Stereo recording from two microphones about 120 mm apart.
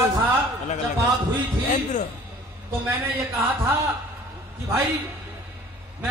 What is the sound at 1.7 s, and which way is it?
Speech, 90° left.